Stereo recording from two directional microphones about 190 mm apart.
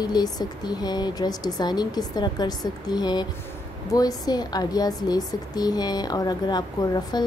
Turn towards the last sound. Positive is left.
turn(degrees=20)  # may be behind; listen again after turning